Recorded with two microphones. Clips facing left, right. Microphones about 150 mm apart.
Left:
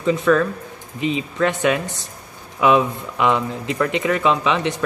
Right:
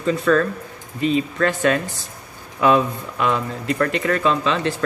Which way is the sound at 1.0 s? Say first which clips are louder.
Right 1 dB; 20° left (ahead or behind).